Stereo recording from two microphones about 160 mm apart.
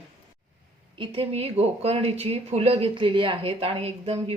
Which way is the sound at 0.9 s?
35° right (ahead or behind).